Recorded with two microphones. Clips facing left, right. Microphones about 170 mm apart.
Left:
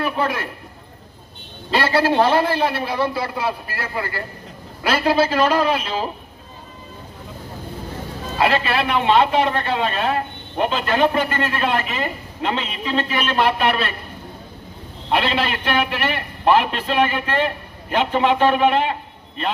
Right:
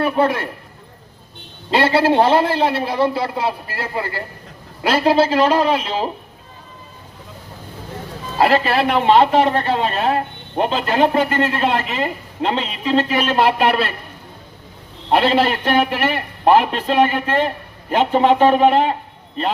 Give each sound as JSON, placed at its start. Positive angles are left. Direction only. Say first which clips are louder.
{"t": 0.0, "sound": "a man's voice", "louder": "right 5 dB", "side_deg": -30}
{"t": 1.7, "sound": "a man's voice", "louder": "right 3 dB", "side_deg": -25}
{"t": 8.4, "sound": "a man's voice", "louder": "right 4 dB", "side_deg": -40}
{"t": 15.1, "sound": "a man's voice", "louder": "right 5 dB", "side_deg": -40}